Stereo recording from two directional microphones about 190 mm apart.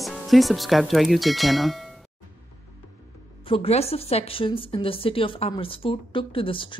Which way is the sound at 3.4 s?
30° left (ahead or behind).